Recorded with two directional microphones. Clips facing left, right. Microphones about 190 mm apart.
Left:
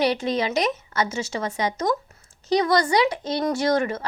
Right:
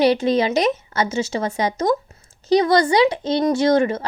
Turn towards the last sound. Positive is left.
turn(degrees=-25)  # may be behind; listen again after turning